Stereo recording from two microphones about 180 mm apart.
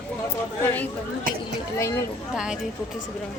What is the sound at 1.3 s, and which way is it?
Speech, 50° right (ahead or behind).